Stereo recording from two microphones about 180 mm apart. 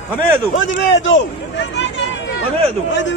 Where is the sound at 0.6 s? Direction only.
90° left.